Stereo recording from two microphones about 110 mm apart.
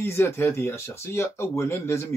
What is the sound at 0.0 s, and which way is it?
Speech, 20° left (ahead or behind).